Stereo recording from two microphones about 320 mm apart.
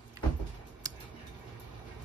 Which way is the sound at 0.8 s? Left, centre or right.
Centre.